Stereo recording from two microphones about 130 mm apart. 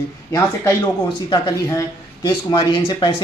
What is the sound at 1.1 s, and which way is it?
Speech, 30° left (ahead or behind).